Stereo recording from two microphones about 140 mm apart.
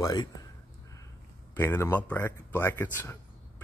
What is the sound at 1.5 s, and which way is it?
Speech, 15° left (ahead or behind).